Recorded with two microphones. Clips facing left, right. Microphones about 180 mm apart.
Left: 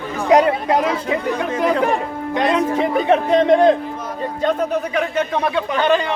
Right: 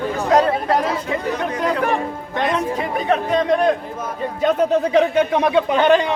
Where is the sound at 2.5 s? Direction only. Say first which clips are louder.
Left 4 dB; 25° left (ahead or behind).